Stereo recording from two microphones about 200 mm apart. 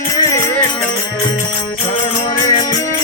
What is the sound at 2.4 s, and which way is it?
Music, 20° left (ahead or behind).